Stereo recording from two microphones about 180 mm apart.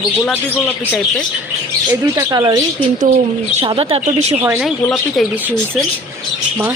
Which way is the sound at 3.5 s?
30° right (ahead or behind).